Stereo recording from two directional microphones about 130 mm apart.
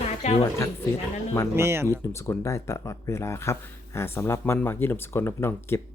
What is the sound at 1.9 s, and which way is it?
Speech, 20° left (ahead or behind).